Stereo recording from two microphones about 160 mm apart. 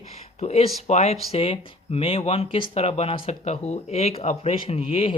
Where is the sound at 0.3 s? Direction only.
40° left (ahead or behind).